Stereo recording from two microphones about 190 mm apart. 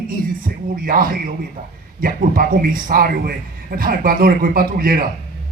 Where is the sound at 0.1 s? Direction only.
50° right (ahead or behind).